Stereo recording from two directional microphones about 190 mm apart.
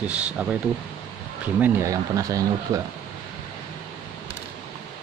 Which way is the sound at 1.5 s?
10° right (ahead or behind).